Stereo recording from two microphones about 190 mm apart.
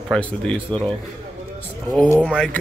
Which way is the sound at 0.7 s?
25° right (ahead or behind).